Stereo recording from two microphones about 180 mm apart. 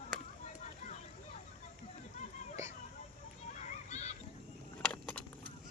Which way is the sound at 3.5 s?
40° left (ahead or behind).